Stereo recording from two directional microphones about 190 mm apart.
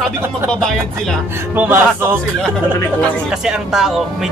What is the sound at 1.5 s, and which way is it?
Speech, 10° right (ahead or behind).